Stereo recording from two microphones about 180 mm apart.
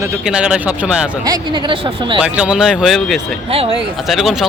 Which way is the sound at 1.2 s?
25° right (ahead or behind).